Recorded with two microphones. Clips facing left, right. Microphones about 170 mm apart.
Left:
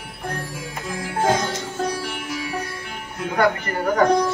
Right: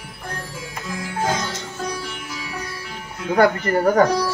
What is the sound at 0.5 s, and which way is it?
Music, 60° left (ahead or behind).